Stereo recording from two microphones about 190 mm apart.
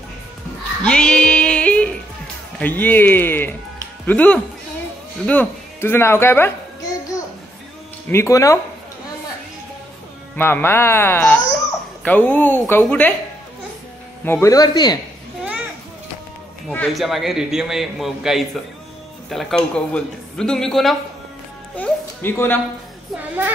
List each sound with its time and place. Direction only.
0.8 s music: 5° left (ahead or behind)
2.6 s speech: 10° left (ahead or behind)
8.1 s speech: 15° left (ahead or behind)
10.3 s speech: 10° left (ahead or behind)
14.2 s a man's voice: 15° left (ahead or behind)
16.6 s a man's voice: centre (ahead or behind)
21.7 s a sound: 10° left (ahead or behind)